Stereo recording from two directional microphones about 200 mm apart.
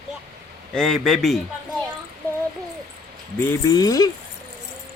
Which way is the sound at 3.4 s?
15° left (ahead or behind).